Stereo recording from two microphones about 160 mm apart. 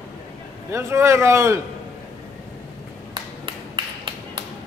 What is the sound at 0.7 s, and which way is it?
Speech, 20° right (ahead or behind).